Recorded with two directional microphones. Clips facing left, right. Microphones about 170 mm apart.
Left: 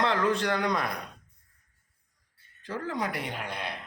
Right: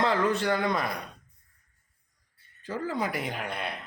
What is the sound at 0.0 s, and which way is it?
Speech, 5° right (ahead or behind).